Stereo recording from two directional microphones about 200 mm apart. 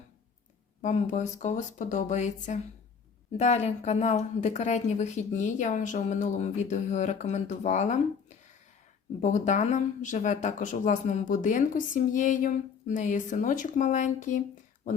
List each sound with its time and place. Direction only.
0.8 s a woman's voice: 35° left (ahead or behind)